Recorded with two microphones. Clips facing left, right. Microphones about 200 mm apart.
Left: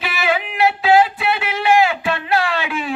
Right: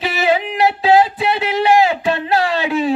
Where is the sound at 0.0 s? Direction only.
35° right (ahead or behind).